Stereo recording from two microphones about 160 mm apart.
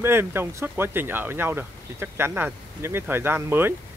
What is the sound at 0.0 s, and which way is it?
Speech, 15° right (ahead or behind).